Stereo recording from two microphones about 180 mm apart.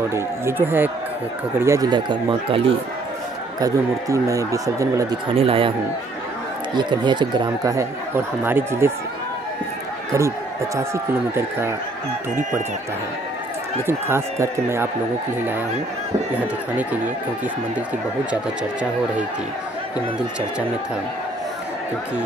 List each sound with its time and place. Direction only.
0.1 s speech: 15° right (ahead or behind)
3.6 s speech: 15° right (ahead or behind)
5.3 s speech: 30° right (ahead or behind)
6.7 s speech: 25° right (ahead or behind)
13.8 s speech: 15° right (ahead or behind)
18.3 s speech: 5° right (ahead or behind)